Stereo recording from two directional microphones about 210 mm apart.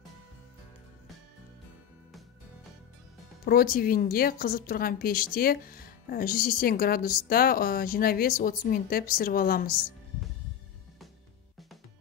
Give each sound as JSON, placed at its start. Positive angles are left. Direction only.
{"t": 3.4, "sound": "a woman's voice", "side_deg": 45}